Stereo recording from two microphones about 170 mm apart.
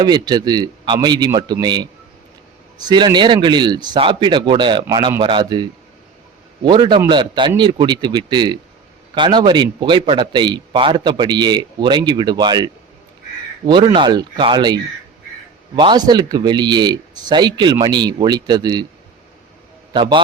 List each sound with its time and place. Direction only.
0.0 s a man's voice: 25° right (ahead or behind)
19.9 s a man's voice: 30° right (ahead or behind)